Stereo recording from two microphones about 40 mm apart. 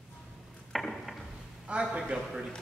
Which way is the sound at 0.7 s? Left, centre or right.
Centre.